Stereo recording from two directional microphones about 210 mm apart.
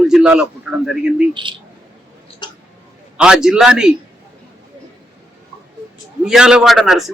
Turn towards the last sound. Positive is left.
turn(degrees=0)  # may be behind; listen again after turning